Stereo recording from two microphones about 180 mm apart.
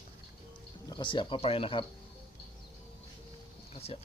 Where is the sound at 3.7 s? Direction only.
35° left (ahead or behind).